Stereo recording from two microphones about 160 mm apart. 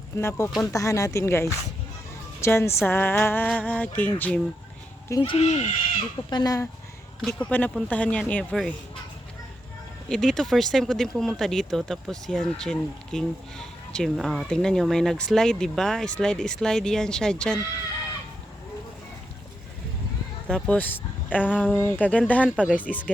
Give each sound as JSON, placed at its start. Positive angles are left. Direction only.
{"t": 0.2, "sound": "speech", "side_deg": 15}
{"t": 5.2, "sound": "speech", "side_deg": 30}
{"t": 5.5, "sound": "speech", "side_deg": 45}
{"t": 6.3, "sound": "speech", "side_deg": 25}
{"t": 7.2, "sound": "speech", "side_deg": 5}
{"t": 10.1, "sound": "speech", "side_deg": 5}
{"t": 20.5, "sound": "speech", "side_deg": 10}